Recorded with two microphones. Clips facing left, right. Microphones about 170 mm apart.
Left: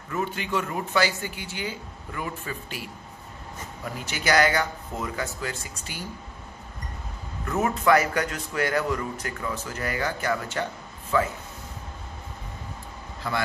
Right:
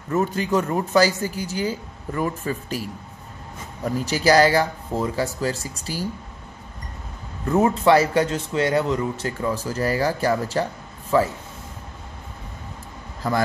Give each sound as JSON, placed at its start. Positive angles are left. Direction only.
{"t": 0.1, "sound": "speech", "side_deg": -40}
{"t": 7.4, "sound": "a man's voice", "side_deg": -30}